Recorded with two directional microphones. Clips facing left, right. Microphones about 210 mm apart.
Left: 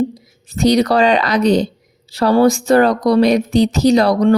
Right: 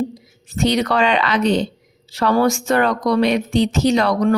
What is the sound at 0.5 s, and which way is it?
Speech, 40° left (ahead or behind).